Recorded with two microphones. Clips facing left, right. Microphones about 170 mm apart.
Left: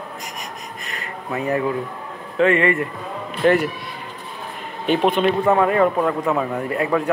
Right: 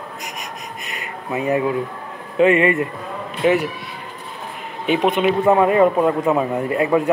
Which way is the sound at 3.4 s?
10° right (ahead or behind).